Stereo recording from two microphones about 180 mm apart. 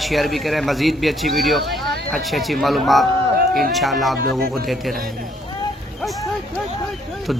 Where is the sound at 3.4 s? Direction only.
55° right (ahead or behind).